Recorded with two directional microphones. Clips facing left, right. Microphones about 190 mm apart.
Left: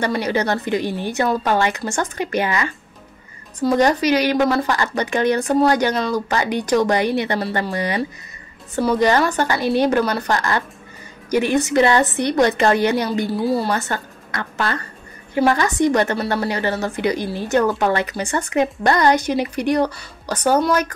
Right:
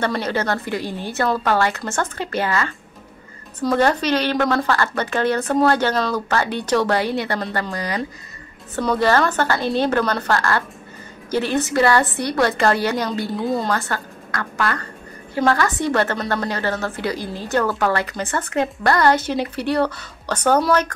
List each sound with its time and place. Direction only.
0.0 s a woman's voice: 10° left (ahead or behind)
13.3 s speech: 5° left (ahead or behind)
13.7 s a woman's voice: 20° left (ahead or behind)